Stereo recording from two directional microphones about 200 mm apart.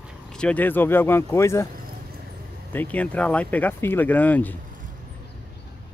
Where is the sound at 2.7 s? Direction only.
10° left (ahead or behind).